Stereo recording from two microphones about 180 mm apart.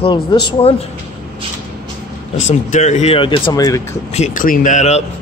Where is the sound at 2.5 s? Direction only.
40° left (ahead or behind); by 3.8 s 20° left (ahead or behind).